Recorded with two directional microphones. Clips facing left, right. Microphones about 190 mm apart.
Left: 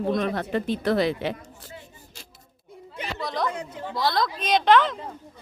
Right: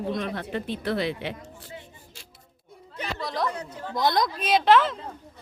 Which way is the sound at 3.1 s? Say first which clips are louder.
Left 1 dB; centre (ahead or behind).